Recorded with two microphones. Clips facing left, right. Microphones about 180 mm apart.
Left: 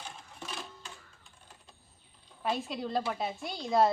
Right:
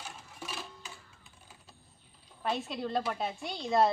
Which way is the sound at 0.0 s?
5° right (ahead or behind).